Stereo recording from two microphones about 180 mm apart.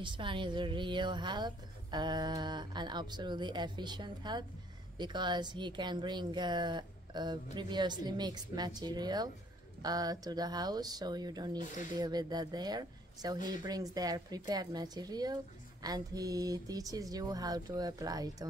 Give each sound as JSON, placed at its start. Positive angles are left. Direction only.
{"t": 0.0, "sound": "a woman's voice", "side_deg": -25}